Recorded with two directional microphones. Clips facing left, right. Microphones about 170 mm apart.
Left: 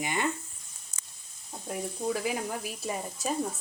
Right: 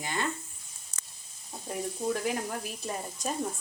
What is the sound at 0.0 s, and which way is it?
Speech, 15° left (ahead or behind).